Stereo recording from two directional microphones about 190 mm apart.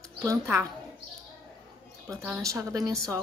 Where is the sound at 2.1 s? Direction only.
10° right (ahead or behind).